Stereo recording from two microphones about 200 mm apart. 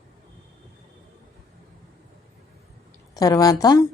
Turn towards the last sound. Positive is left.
turn(degrees=15)  # may be behind; listen again after turning